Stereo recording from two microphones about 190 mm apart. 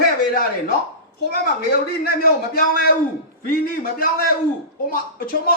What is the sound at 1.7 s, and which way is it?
A man's voice, 50° left (ahead or behind).